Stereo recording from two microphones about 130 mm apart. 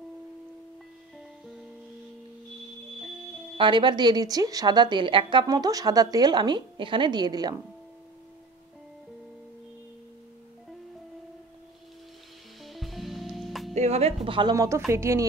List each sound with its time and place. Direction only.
3.5 s a woman's voice: 40° right (ahead or behind)
12.6 s music: centre (ahead or behind)
13.7 s speech: 55° right (ahead or behind)
14.2 s a woman's voice: 40° right (ahead or behind)
14.5 s speech: 25° right (ahead or behind)